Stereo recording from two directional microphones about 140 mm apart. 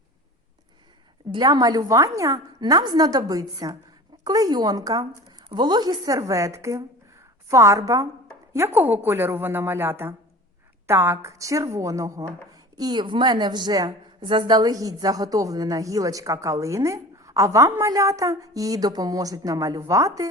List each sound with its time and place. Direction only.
1.3 s a woman's voice: 30° right (ahead or behind)